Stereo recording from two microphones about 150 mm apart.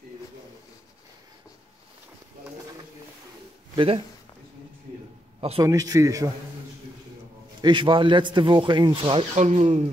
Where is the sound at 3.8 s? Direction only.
35° right (ahead or behind).